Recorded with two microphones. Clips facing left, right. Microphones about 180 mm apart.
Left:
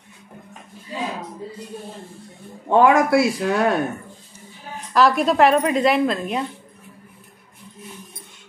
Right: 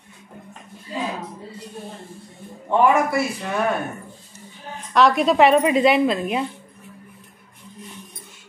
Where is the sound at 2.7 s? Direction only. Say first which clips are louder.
Left 3 dB; 90° left.